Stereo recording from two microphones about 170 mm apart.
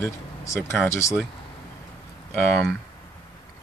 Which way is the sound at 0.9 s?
15° left (ahead or behind).